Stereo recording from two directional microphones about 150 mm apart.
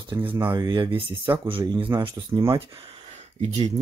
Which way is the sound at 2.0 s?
20° right (ahead or behind).